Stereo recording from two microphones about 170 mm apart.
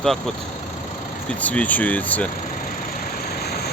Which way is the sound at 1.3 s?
10° left (ahead or behind).